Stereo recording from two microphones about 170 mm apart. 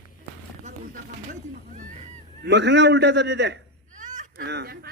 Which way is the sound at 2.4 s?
90° right.